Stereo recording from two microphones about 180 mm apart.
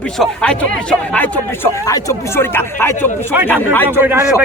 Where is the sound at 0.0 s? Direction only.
5° left (ahead or behind).